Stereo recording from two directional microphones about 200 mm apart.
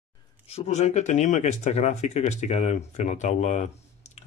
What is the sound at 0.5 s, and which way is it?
A man's voice, 35° left (ahead or behind).